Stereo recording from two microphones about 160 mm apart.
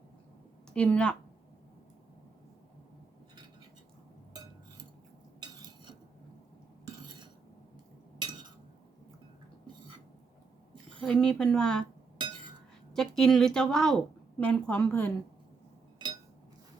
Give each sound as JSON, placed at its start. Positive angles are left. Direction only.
{"t": 0.7, "sound": "a woman's voice", "side_deg": 5}
{"t": 5.4, "sound": "cutlery", "side_deg": -25}
{"t": 11.0, "sound": "a woman's voice", "side_deg": 5}
{"t": 12.9, "sound": "a woman's voice", "side_deg": 0}